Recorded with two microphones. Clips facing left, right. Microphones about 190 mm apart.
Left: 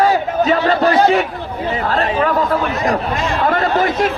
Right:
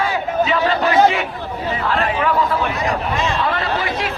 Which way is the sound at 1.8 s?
40° left (ahead or behind).